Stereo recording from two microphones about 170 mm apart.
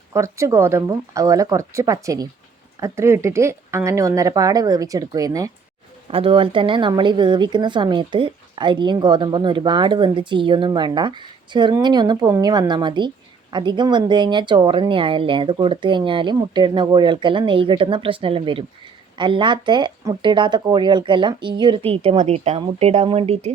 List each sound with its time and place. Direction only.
0.1 s a woman's voice: 15° right (ahead or behind)
6.1 s a woman's voice: 30° right (ahead or behind)